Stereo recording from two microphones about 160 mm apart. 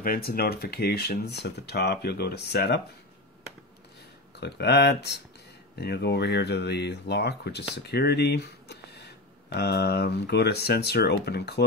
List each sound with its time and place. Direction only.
0.0 s speech: 65° left (ahead or behind); by 2.8 s 90° left
4.4 s speech: 90° left